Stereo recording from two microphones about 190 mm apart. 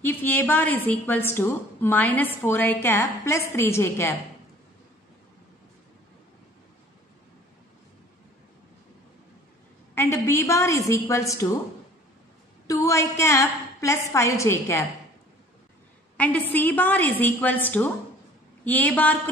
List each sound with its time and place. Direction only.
0.0 s a woman's voice: 10° left (ahead or behind)
9.9 s a woman's voice: 15° left (ahead or behind)
12.6 s a woman's voice: 15° left (ahead or behind)
16.2 s a woman's voice: 10° left (ahead or behind)